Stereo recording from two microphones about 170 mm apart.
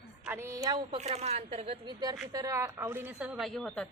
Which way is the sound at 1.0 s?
40° right (ahead or behind).